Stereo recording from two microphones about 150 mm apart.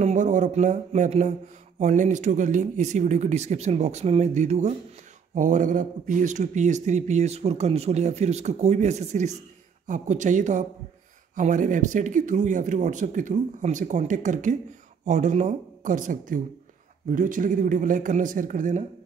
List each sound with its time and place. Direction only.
0.0 s a man's voice: 55° right (ahead or behind)